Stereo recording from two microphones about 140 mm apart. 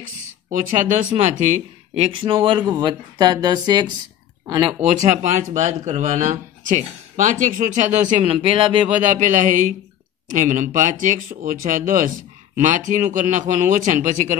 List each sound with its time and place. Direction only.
0.5 s speech: 65° right (ahead or behind)
2.1 s speech: 35° right (ahead or behind)
5.0 s speech: 60° right (ahead or behind)
8.4 s speech: 40° right (ahead or behind)
8.8 s speech: 65° right (ahead or behind)
12.5 s speech: 60° right (ahead or behind)